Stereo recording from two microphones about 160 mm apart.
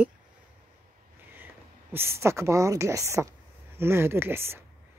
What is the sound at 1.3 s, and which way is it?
A woman's voice, 15° right (ahead or behind).